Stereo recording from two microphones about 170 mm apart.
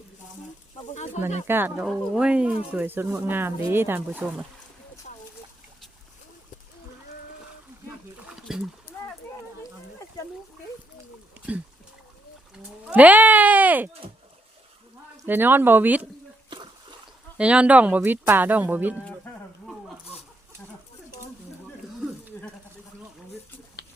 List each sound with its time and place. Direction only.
0.9 s speech: 40° left (ahead or behind)
1.5 s speech: 10° right (ahead or behind)
8.3 s a sound: 5° right (ahead or behind)
12.9 s speech: 10° right (ahead or behind)
15.3 s speech: 10° right (ahead or behind)
17.3 s speech: 5° right (ahead or behind)
19.0 s a sound: 10° left (ahead or behind)